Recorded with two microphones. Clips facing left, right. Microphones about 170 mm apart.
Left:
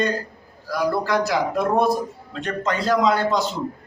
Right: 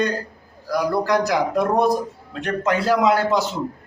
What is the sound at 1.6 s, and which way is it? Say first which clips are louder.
A man's voice: right 1 dB; 15° right (ahead or behind).